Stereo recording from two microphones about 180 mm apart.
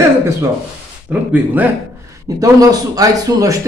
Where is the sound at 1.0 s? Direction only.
10° right (ahead or behind).